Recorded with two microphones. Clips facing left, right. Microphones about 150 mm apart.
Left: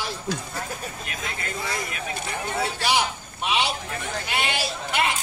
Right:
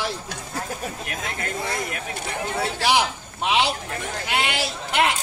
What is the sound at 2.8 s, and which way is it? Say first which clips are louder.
A man's voice: right 5 dB; 85° right.